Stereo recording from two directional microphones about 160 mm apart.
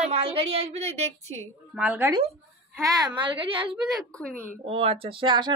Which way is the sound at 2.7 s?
20° right (ahead or behind).